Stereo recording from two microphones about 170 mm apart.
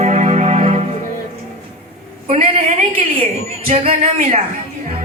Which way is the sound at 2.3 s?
40° right (ahead or behind).